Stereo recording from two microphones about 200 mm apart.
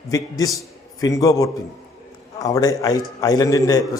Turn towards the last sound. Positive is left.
turn(degrees=15)  # may be behind; listen again after turning